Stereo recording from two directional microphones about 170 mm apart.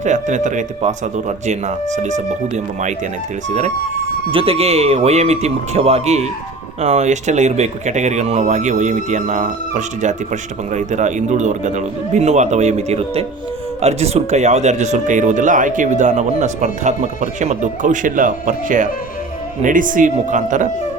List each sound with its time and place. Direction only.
0.0 s speech: 45° right (ahead or behind)
4.3 s speech: 35° right (ahead or behind)